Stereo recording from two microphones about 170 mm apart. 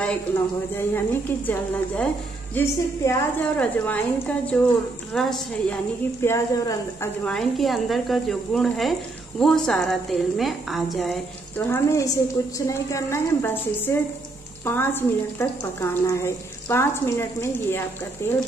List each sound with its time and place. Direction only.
0.7 s a woman's voice: 10° left (ahead or behind)
6.2 s speech: 15° left (ahead or behind)
7.3 s a woman's voice: centre (ahead or behind)
11.5 s speech: 15° left (ahead or behind)